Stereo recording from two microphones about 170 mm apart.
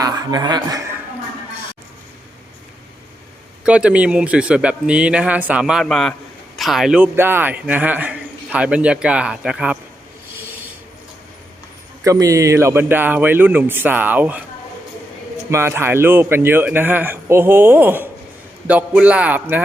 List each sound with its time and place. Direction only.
0.0 s a man's voice: 20° right (ahead or behind)
3.6 s speech: 5° right (ahead or behind)
12.0 s speech: 20° right (ahead or behind)
15.4 s speech: 15° right (ahead or behind)